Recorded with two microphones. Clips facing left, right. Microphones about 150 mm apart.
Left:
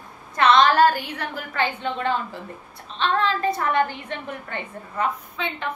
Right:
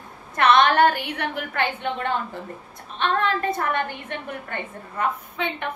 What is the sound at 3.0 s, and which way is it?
A woman's voice, 55° right (ahead or behind).